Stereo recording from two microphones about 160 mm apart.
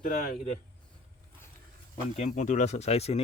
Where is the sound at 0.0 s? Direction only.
60° left (ahead or behind).